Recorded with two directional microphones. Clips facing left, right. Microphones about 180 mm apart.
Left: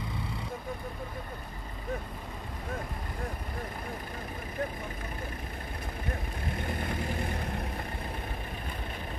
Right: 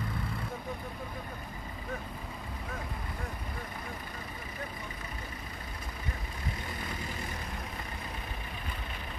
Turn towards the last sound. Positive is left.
turn(degrees=60)  # may be behind; listen again after turning